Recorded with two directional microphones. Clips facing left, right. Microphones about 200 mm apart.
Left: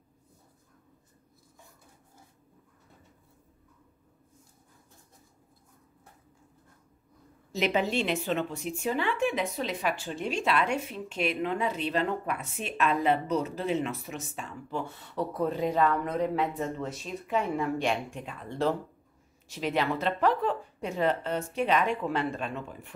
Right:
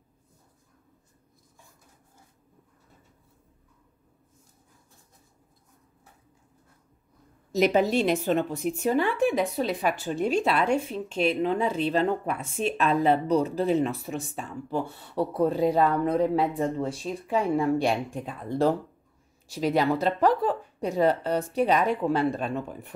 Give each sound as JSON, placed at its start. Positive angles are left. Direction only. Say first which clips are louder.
{"t": 7.5, "sound": "a woman's voice", "louder": "right 6 dB", "side_deg": -40}